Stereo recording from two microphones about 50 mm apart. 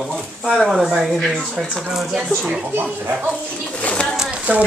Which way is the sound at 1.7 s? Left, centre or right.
Centre.